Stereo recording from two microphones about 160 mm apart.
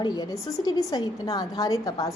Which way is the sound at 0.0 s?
25° left (ahead or behind).